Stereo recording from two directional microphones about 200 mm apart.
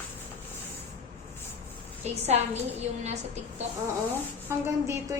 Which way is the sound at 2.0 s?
35° right (ahead or behind).